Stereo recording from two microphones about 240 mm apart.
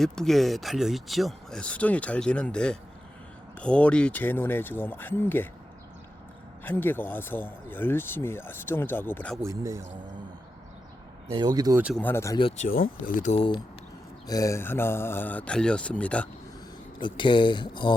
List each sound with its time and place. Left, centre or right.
0.0 s speech: centre
6.7 s speech: centre
9.4 s speech: centre
11.3 s speech: centre
11.8 s speech: centre
12.0 s speech: centre
12.6 s speech: left; by 16.3 s centre
17.0 s speech: centre